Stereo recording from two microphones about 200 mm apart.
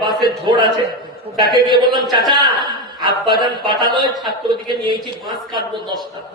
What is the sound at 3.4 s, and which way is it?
A man's voice, 20° right (ahead or behind).